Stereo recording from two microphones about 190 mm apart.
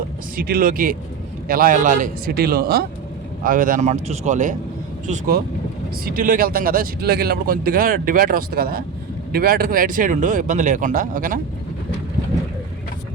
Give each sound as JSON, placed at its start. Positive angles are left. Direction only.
{"t": 0.3, "sound": "a man's voice", "side_deg": -50}